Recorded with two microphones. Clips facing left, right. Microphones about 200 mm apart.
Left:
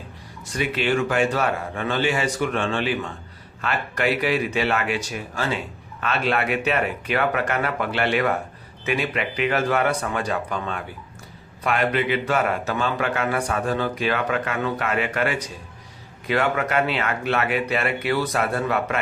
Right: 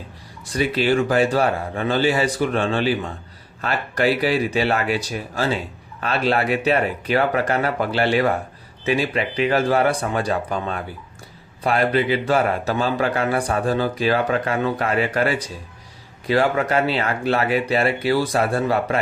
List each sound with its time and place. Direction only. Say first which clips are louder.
0.5 s a man's voice: right 4 dB; 35° right (ahead or behind)